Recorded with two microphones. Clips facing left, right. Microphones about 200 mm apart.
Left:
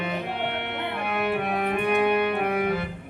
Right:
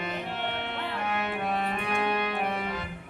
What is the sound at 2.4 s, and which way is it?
Music, 60° left (ahead or behind).